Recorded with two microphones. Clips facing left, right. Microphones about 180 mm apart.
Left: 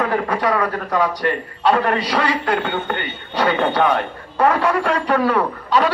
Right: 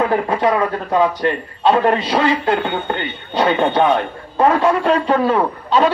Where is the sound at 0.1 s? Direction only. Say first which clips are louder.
Right 3 dB; 20° right (ahead or behind).